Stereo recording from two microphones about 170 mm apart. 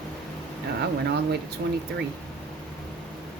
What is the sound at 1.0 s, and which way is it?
Speech, 75° right (ahead or behind).